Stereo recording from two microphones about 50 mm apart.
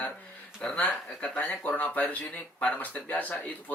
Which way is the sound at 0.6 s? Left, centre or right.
Left.